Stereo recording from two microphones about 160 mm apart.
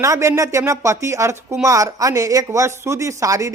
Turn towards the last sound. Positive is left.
turn(degrees=-20)  # may be behind; listen again after turning